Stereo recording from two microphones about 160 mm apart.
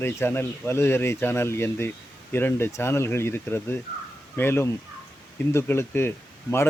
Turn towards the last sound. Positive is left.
turn(degrees=15)  # may be behind; listen again after turning